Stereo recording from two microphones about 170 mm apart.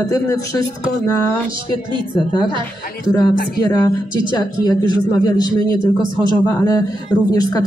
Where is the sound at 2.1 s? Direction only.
25° left (ahead or behind).